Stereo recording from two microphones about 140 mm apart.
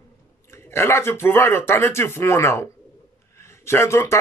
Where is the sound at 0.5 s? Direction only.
15° left (ahead or behind).